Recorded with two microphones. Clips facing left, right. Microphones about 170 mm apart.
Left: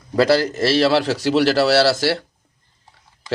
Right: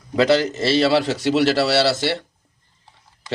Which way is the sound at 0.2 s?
20° right (ahead or behind).